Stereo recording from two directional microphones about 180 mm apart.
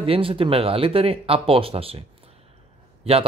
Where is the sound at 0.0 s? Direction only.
30° right (ahead or behind).